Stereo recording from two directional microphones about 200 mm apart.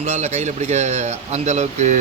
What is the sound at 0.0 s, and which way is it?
Speech, 35° right (ahead or behind).